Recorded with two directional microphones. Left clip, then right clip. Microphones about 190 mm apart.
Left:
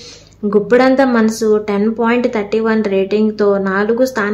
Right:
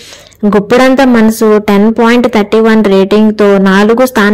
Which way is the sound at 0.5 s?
40° right (ahead or behind).